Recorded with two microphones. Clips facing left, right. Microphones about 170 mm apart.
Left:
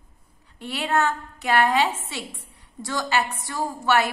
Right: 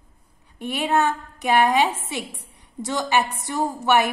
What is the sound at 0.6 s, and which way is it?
A woman's voice, 15° right (ahead or behind).